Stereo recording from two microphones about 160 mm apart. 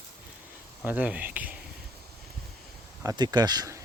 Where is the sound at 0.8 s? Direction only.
10° right (ahead or behind).